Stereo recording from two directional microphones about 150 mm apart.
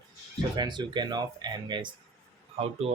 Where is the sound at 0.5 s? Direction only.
30° right (ahead or behind).